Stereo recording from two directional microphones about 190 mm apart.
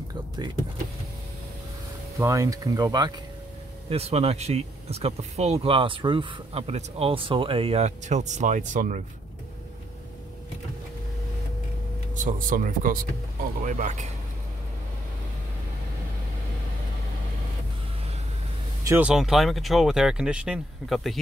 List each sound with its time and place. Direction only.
2.1 s speech: 15° right (ahead or behind)
3.9 s speech: 30° right (ahead or behind)
12.2 s speech: 45° right (ahead or behind)
18.9 s speech: 5° right (ahead or behind)